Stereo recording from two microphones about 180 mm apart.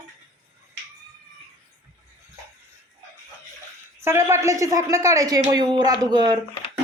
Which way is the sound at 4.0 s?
15° right (ahead or behind).